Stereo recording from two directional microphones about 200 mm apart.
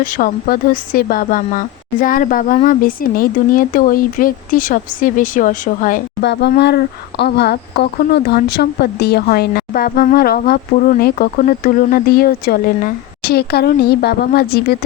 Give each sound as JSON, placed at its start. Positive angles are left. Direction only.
{"t": 0.0, "sound": "speech", "side_deg": 45}
{"t": 6.2, "sound": "speech", "side_deg": 55}